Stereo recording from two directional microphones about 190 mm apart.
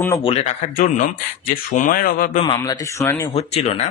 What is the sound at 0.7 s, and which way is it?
Speech, 45° left (ahead or behind).